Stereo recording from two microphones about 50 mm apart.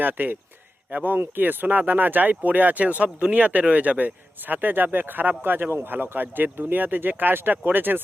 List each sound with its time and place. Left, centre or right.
0.0 s speech: right